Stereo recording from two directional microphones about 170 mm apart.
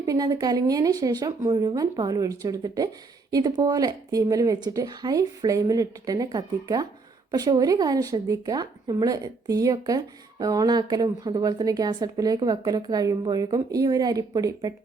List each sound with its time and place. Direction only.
0.0 s speech: 20° right (ahead or behind)